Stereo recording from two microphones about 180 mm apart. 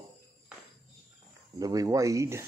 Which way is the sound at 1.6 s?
20° right (ahead or behind).